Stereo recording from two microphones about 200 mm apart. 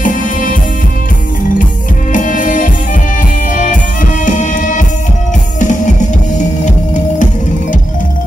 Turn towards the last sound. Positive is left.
turn(degrees=40)  # may be behind; listen again after turning